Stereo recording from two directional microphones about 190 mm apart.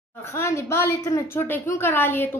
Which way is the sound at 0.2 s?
15° left (ahead or behind).